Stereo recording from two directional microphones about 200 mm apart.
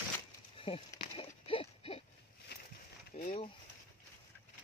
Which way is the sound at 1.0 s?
30° left (ahead or behind).